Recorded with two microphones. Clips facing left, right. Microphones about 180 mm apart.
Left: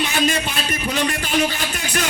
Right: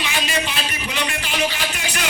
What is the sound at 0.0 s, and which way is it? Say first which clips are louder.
A man's voice: left 4 dB; 45° left (ahead or behind).